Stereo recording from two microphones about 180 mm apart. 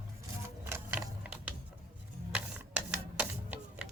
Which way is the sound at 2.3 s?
5° right (ahead or behind).